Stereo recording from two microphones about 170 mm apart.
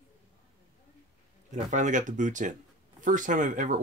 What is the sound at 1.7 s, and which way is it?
Speech, 45° right (ahead or behind).